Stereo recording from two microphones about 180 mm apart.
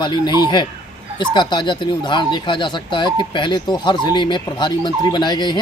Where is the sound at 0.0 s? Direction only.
25° left (ahead or behind).